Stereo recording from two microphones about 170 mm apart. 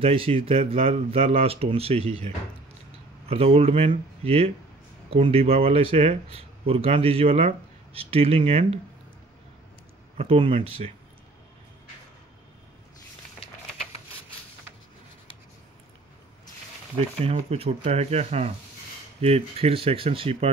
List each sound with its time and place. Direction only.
0.0 s speech: 35° right (ahead or behind)
10.1 s speech: 35° right (ahead or behind)
17.2 s speech: 35° right (ahead or behind)